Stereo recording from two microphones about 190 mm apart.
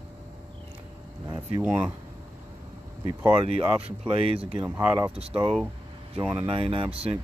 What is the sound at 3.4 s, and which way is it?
Speech, 30° right (ahead or behind).